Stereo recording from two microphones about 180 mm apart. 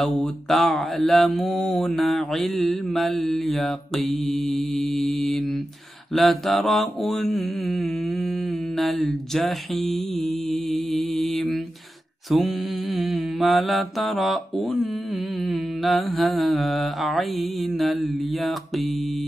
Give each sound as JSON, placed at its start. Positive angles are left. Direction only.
{"t": 0.2, "sound": "mantra", "side_deg": 0}